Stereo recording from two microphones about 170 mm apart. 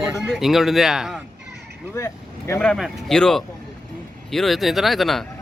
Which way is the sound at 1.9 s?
15° left (ahead or behind).